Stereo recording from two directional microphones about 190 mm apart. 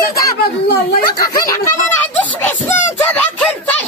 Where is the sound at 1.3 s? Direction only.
20° left (ahead or behind).